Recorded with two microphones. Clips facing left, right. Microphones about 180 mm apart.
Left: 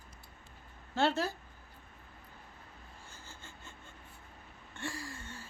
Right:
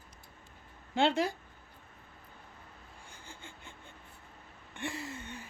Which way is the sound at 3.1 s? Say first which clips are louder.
Right 5 dB; 15° right (ahead or behind).